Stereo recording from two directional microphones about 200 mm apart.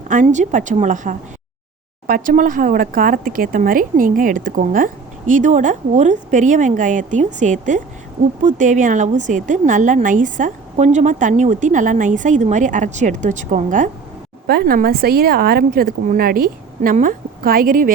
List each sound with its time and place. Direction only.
0.1 s speech: 40° right (ahead or behind)